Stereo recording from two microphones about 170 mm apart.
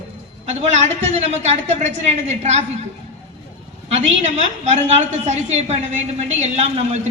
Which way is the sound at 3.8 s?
45° right (ahead or behind).